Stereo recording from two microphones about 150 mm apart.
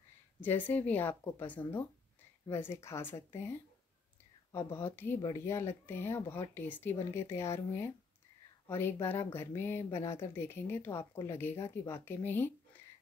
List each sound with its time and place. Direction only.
0.4 s speech: 10° left (ahead or behind)